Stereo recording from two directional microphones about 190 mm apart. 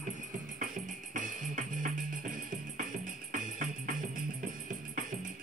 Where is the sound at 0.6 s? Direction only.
45° right (ahead or behind).